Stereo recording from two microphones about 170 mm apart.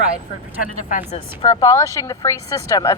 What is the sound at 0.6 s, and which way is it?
Speech, 50° left (ahead or behind).